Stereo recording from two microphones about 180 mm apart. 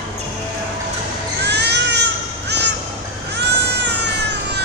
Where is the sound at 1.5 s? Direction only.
70° right (ahead or behind).